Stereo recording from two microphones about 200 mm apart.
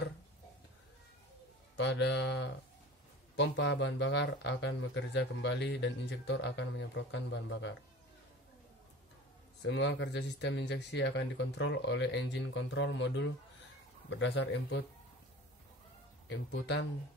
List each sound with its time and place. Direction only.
1.8 s speech: 60° left (ahead or behind)
9.6 s speech: 60° left (ahead or behind)
16.3 s speech: 60° left (ahead or behind)